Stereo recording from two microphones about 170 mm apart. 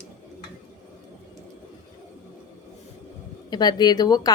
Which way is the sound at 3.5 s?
25° left (ahead or behind).